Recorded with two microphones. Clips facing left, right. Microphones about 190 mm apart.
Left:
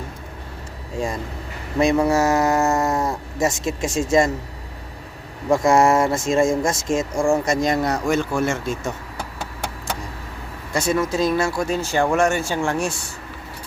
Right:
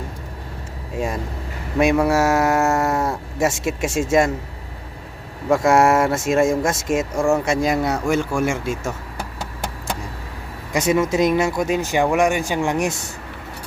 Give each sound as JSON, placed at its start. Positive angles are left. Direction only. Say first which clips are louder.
{"t": 1.8, "sound": "speech", "louder": "right 1 dB", "side_deg": -5}
{"t": 5.5, "sound": "speech", "louder": "right 1 dB", "side_deg": -5}
{"t": 10.7, "sound": "speech", "louder": "right 3 dB", "side_deg": -15}